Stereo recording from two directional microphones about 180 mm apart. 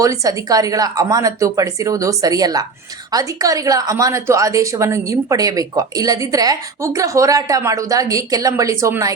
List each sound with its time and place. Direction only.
0.0 s speech: 20° right (ahead or behind)